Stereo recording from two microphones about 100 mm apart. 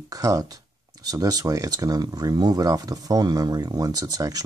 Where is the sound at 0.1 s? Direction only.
35° right (ahead or behind).